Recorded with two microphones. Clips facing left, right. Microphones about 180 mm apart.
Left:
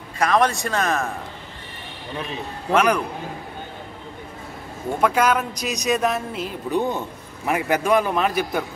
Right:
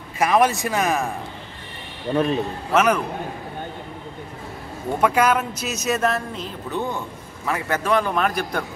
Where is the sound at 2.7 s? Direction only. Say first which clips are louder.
Even; 5° right (ahead or behind).